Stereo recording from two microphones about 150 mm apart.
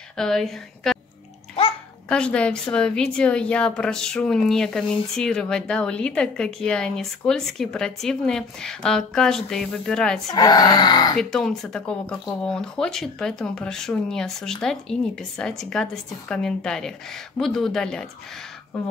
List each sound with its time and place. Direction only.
0.2 s a woman's voice: 5° left (ahead or behind)
2.0 s a woman's voice: 5° left (ahead or behind)
10.3 s speech: 25° left (ahead or behind)
11.1 s a woman's voice: 5° left (ahead or behind)